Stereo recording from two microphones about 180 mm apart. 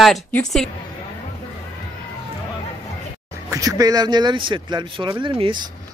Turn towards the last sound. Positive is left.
turn(degrees=-25)  # may be behind; listen again after turning